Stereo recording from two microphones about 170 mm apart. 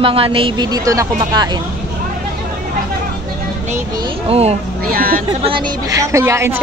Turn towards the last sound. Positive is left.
turn(degrees=-15)  # may be behind; listen again after turning